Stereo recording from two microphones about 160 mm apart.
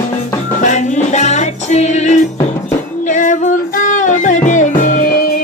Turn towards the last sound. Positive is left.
turn(degrees=55)  # may be behind; listen again after turning